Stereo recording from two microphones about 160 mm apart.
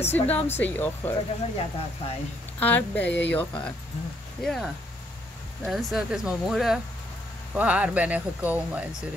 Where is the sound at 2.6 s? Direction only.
10° left (ahead or behind).